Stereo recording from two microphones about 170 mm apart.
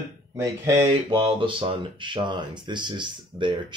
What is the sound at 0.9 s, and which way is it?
Speech, 30° right (ahead or behind).